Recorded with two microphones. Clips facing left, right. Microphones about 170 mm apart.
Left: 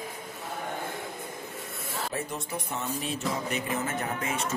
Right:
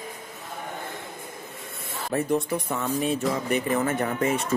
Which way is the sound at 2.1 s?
60° right (ahead or behind).